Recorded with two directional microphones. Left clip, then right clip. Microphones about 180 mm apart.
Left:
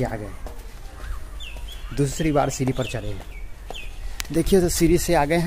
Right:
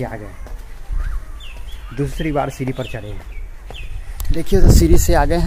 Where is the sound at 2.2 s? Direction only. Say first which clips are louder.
Right 1 dB; 5° right (ahead or behind).